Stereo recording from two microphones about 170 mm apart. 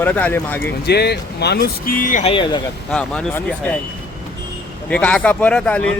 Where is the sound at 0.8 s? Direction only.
70° left (ahead or behind); by 2.3 s 50° left (ahead or behind).